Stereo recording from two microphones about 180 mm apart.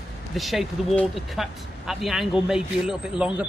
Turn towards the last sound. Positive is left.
turn(degrees=-5)  # may be behind; listen again after turning